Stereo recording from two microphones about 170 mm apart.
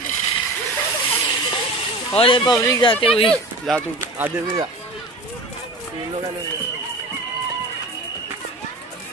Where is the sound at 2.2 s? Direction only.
30° left (ahead or behind).